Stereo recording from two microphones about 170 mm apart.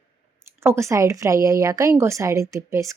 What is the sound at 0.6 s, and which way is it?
A woman's voice, 15° right (ahead or behind).